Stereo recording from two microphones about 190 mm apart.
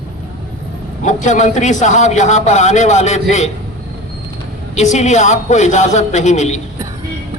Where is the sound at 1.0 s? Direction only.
40° left (ahead or behind).